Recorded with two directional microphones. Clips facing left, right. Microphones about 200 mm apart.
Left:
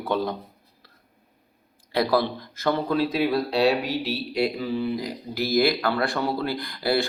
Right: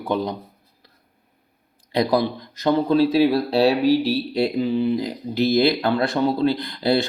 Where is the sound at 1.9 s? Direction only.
20° right (ahead or behind).